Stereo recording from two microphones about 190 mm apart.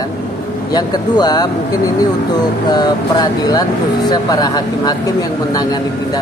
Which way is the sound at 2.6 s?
20° left (ahead or behind).